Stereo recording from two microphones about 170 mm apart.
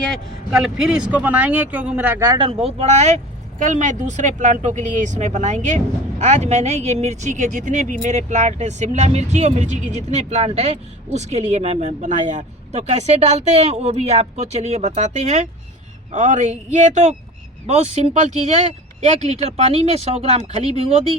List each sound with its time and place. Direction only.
0.5 s speech: 5° right (ahead or behind); by 21.0 s 35° right (ahead or behind)